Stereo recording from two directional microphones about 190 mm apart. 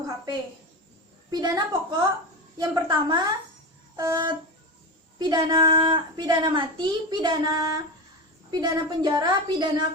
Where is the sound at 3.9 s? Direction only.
20° right (ahead or behind).